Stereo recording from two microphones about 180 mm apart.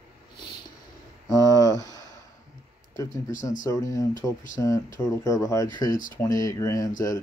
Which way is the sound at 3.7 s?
20° left (ahead or behind).